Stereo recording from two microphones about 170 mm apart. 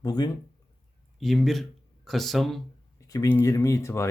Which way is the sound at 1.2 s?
Centre (ahead or behind).